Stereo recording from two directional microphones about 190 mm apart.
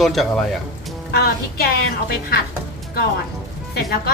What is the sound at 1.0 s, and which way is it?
Speech, 55° left (ahead or behind).